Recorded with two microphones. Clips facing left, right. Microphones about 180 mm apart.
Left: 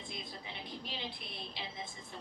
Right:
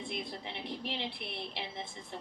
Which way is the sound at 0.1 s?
60° right (ahead or behind).